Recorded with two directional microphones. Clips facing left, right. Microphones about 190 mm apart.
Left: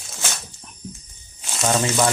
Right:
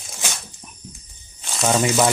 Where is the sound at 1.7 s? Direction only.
10° right (ahead or behind).